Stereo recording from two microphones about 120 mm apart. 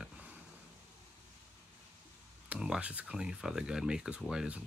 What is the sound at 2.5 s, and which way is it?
Speech, 10° right (ahead or behind).